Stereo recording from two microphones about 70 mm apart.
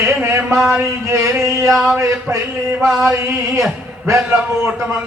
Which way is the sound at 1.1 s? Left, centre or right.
Right.